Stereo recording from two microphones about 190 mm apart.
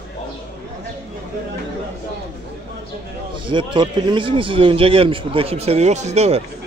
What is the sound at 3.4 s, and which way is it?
A man's voice, 25° right (ahead or behind).